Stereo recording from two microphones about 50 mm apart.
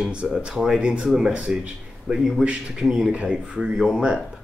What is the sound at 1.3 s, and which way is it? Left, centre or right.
Speech, right.